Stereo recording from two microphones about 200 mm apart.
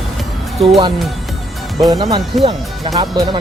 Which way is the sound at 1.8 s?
20° right (ahead or behind).